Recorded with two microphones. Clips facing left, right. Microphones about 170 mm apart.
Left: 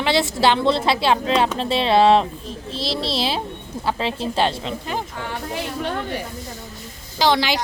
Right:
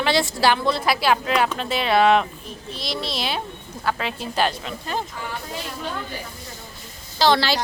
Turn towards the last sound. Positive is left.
turn(degrees=15)  # may be behind; listen again after turning